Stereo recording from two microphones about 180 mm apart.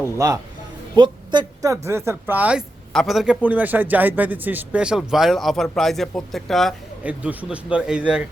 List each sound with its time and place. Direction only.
0.0 s speech: 15° right (ahead or behind)